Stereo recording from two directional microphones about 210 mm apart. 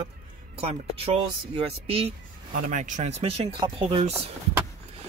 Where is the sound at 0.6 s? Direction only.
25° right (ahead or behind).